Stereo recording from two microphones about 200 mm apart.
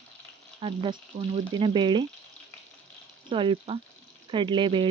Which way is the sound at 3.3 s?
25° right (ahead or behind).